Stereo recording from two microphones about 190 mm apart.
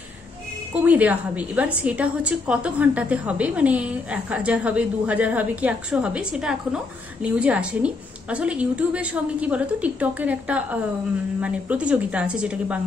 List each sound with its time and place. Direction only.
0.8 s a woman's voice: 10° right (ahead or behind)